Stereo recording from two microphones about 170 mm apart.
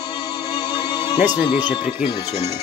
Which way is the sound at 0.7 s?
25° left (ahead or behind).